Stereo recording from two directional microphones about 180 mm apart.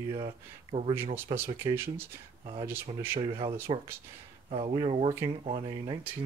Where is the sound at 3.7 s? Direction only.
30° right (ahead or behind).